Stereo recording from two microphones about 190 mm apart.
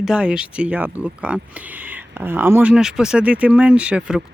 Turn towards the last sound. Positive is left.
turn(degrees=-5)  # may be behind; listen again after turning